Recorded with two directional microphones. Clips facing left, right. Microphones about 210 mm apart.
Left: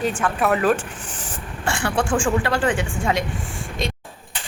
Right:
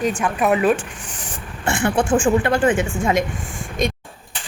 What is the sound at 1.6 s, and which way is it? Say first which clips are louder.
Vehicle: right 4 dB; 20° right (ahead or behind).